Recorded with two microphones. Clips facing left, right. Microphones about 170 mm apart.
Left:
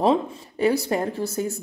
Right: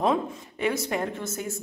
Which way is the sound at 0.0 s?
35° left (ahead or behind).